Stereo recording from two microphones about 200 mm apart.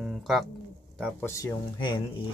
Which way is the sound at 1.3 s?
15° left (ahead or behind).